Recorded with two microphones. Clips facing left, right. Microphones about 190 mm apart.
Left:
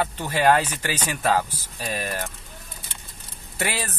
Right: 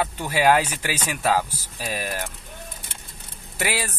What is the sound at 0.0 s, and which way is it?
Speech, 5° right (ahead or behind).